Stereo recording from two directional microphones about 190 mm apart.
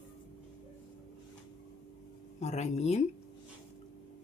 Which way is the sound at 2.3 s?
35° left (ahead or behind).